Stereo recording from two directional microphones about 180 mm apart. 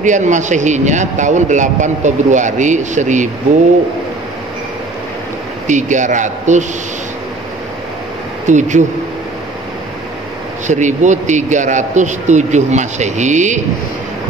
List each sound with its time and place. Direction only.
0.0 s a man's voice: 45° right (ahead or behind)
5.7 s a man's voice: 45° right (ahead or behind)
8.5 s a man's voice: 40° right (ahead or behind)
10.7 s a man's voice: 40° right (ahead or behind)